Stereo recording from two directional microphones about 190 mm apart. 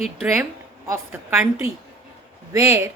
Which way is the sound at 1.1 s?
10° right (ahead or behind).